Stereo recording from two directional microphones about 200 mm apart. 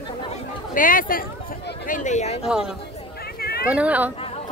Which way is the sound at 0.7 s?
45° left (ahead or behind).